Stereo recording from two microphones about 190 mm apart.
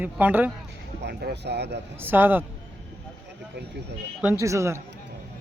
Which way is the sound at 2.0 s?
10° right (ahead or behind).